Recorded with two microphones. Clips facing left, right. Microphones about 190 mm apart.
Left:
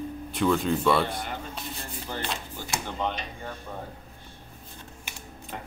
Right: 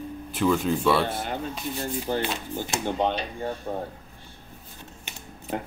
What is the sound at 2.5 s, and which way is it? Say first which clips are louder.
Speech: right 6 dB; 20° right (ahead or behind).